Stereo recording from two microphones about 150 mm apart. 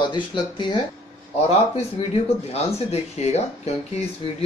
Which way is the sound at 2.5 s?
45° left (ahead or behind).